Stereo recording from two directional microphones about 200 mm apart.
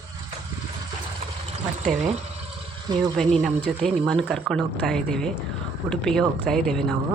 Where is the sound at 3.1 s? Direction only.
Centre (ahead or behind).